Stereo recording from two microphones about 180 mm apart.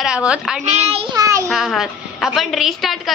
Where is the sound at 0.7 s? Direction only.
35° right (ahead or behind).